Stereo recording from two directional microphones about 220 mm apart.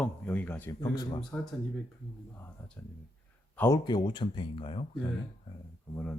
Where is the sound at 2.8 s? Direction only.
10° left (ahead or behind).